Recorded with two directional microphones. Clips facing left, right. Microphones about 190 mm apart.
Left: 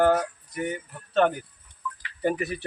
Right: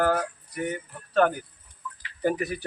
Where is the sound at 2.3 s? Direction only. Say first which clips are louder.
Even; 25° left (ahead or behind).